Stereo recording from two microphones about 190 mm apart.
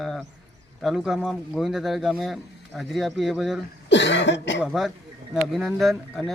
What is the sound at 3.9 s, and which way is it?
Cough, 70° left (ahead or behind).